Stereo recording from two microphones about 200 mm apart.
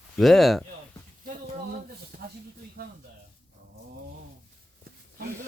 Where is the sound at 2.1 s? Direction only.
45° right (ahead or behind).